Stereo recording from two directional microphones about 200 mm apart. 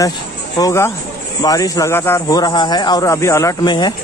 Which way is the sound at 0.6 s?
15° left (ahead or behind).